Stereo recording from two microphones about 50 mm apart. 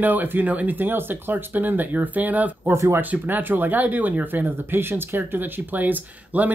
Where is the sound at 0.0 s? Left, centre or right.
Right.